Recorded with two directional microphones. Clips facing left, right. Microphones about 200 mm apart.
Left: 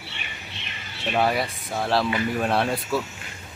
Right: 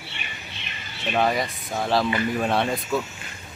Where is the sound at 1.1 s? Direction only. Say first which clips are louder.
Even; 5° left (ahead or behind).